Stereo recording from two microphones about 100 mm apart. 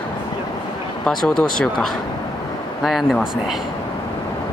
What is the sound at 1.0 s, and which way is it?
Speech, 5° left (ahead or behind).